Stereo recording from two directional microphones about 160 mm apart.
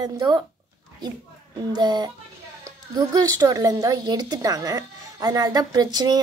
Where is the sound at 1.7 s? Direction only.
25° right (ahead or behind).